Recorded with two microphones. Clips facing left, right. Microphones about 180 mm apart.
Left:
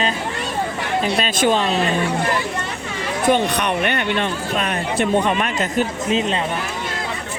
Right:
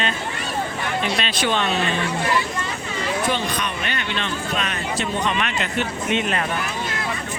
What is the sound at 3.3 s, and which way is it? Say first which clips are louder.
Speech: left 7 dB; 60° left (ahead or behind).